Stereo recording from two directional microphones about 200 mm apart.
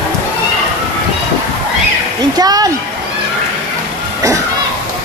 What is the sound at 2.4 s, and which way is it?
Speech, 20° right (ahead or behind).